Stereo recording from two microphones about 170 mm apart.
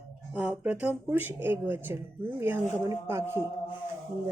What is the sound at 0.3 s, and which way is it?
Speech, 5° right (ahead or behind).